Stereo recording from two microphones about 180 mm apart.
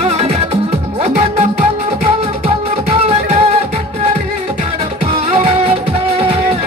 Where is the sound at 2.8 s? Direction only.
35° right (ahead or behind).